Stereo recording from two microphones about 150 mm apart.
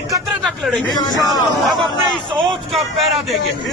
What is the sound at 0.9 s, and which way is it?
Speech, 25° left (ahead or behind).